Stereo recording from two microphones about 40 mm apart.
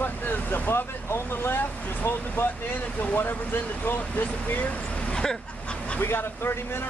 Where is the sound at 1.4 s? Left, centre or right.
Left.